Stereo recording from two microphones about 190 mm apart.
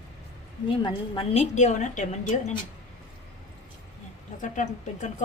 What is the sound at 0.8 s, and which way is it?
A woman's voice, 30° left (ahead or behind).